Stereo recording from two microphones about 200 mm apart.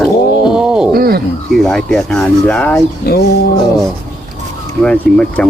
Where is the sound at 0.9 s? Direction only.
50° right (ahead or behind).